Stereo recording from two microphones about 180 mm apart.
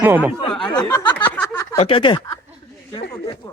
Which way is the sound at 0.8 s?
20° left (ahead or behind).